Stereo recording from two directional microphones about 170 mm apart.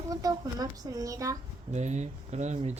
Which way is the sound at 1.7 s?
45° right (ahead or behind).